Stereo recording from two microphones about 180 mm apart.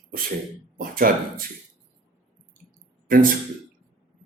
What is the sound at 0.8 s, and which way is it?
Speech, 50° right (ahead or behind).